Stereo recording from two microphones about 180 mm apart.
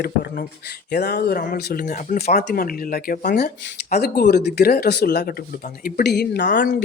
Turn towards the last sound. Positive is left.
turn(degrees=50)  # may be behind; listen again after turning